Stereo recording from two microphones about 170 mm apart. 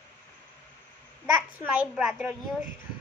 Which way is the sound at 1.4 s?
10° right (ahead or behind).